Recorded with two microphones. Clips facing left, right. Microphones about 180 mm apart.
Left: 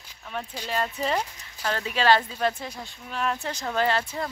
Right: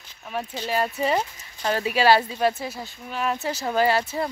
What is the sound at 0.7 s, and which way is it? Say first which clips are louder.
Speech: right 4 dB; 10° right (ahead or behind).